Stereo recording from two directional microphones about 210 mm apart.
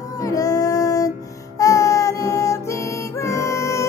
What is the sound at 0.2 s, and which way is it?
Music, 15° left (ahead or behind).